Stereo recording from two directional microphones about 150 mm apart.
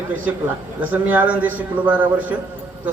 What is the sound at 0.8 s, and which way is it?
A man's voice, 10° right (ahead or behind).